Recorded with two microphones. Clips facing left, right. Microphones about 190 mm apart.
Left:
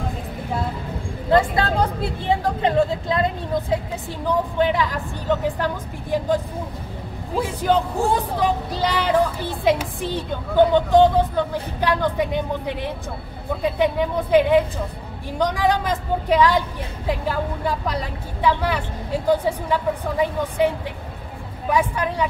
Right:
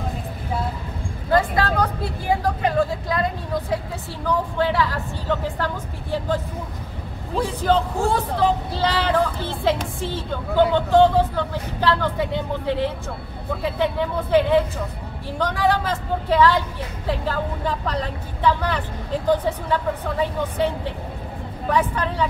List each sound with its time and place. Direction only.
1.3 s speech: 25° left (ahead or behind)